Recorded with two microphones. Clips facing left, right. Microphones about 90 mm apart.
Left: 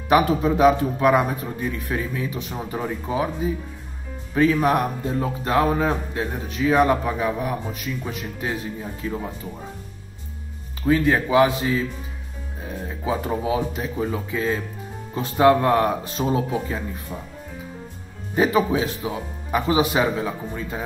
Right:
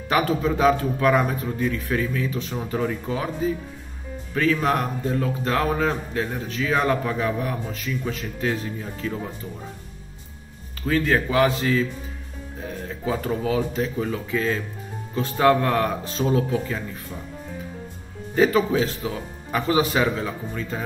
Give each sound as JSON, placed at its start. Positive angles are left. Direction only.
{"t": 0.1, "sound": "speech", "side_deg": 15}
{"t": 4.4, "sound": "speech", "side_deg": 15}
{"t": 10.9, "sound": "speech", "side_deg": 15}
{"t": 12.8, "sound": "speech", "side_deg": 15}
{"t": 18.3, "sound": "speech", "side_deg": 15}